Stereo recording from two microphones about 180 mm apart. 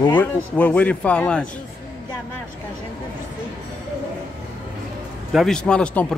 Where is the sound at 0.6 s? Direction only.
10° left (ahead or behind).